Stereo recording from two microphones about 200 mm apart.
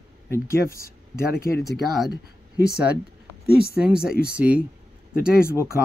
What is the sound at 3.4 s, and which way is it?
Speech, 50° left (ahead or behind).